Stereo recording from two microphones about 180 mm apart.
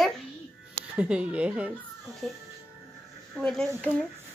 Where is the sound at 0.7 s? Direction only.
5° right (ahead or behind).